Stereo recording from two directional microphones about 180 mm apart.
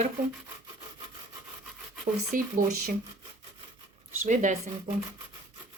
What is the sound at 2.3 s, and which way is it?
Speech, 50° right (ahead or behind).